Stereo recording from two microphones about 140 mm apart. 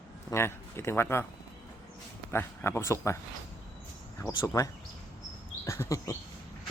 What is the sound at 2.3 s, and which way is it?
Speech, 15° left (ahead or behind).